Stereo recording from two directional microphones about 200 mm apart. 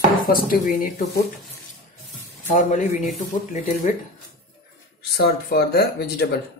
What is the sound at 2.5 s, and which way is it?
Speech, 35° left (ahead or behind).